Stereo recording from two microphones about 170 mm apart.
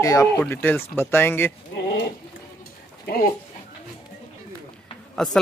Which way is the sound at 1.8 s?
90° left.